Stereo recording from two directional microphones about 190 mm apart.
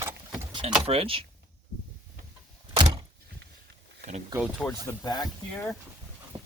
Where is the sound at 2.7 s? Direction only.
25° right (ahead or behind).